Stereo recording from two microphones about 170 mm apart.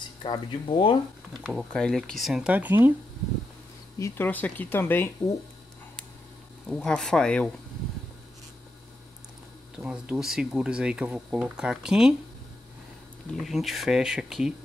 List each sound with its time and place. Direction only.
0.2 s speech: 30° left (ahead or behind)
1.4 s speech: 5° right (ahead or behind)
4.0 s speech: 10° left (ahead or behind)
6.7 s speech: 5° left (ahead or behind)
9.8 s speech: 5° right (ahead or behind)
13.3 s speech: centre (ahead or behind)